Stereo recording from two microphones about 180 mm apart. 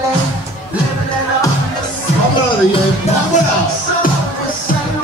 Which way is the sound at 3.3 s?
45° left (ahead or behind).